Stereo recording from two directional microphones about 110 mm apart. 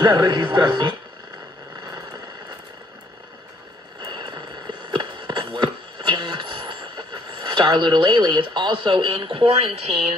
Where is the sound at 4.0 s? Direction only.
45° right (ahead or behind).